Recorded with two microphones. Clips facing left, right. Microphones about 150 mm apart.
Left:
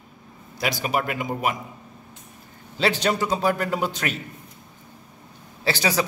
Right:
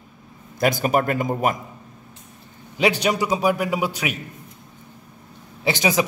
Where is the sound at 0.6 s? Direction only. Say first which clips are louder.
Right 5 dB; 50° right (ahead or behind).